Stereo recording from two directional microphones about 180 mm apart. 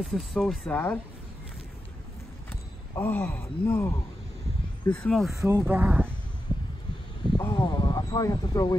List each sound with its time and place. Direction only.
0.0 s speech: centre (ahead or behind)
2.5 s speech: 10° left (ahead or behind)
5.4 s speech: 15° right (ahead or behind)
7.3 s speech: 25° left (ahead or behind)